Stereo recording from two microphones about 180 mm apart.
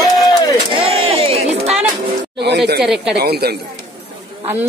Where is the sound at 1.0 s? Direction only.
35° right (ahead or behind).